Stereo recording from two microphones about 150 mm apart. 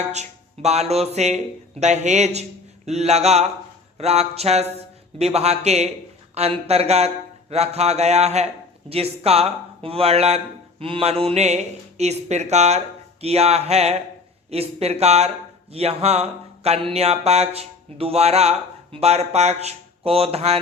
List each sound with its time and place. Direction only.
0.1 s mantra: 50° right (ahead or behind)